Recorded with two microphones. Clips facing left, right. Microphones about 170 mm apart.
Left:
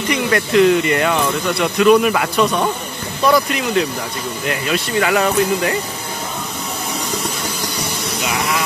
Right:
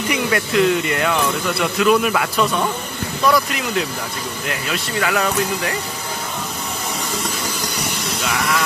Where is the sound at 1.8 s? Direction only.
Centre (ahead or behind).